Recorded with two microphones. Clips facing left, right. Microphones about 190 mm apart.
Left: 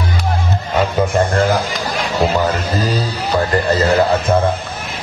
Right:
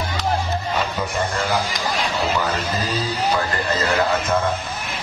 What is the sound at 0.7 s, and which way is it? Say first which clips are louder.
Music: left 12 dB; 50° left (ahead or behind).